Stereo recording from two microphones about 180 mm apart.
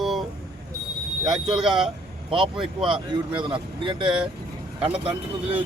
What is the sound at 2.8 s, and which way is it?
A man's voice, 30° right (ahead or behind).